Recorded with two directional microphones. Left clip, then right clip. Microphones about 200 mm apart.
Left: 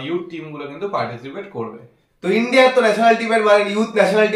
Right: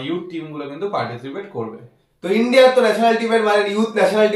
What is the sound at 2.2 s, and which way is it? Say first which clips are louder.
A man's voice: right 1 dB; 15° left (ahead or behind).